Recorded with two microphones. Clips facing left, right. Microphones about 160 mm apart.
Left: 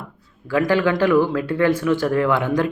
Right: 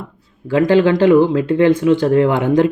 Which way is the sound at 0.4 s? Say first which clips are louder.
Right 6 dB; 25° right (ahead or behind).